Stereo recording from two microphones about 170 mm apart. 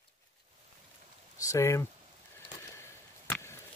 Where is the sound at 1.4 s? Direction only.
20° left (ahead or behind).